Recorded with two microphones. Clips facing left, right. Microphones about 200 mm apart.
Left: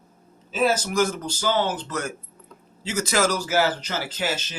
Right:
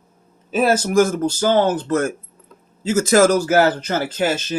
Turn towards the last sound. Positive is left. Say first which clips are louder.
# right 8 dB
turn(degrees=-50)  # may be behind; listen again after turning